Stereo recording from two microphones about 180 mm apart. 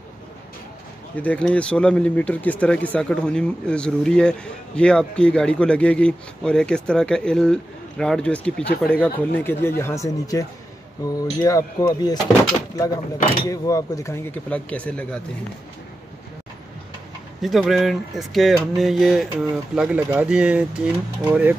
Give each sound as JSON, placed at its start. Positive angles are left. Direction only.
{"t": 1.1, "sound": "speech", "side_deg": 10}
{"t": 11.4, "sound": "speech", "side_deg": 20}
{"t": 17.4, "sound": "speech", "side_deg": 0}